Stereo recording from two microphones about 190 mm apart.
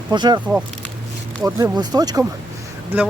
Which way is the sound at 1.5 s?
15° right (ahead or behind).